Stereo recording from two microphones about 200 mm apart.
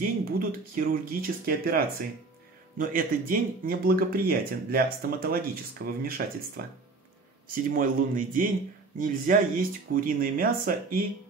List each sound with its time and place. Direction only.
0.0 s speech: 45° right (ahead or behind)